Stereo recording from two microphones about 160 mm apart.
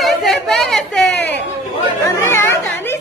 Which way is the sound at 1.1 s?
90° left.